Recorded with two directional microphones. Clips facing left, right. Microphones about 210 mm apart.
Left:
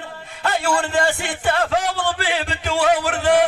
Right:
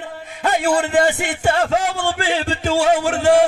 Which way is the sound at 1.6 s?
45° right (ahead or behind).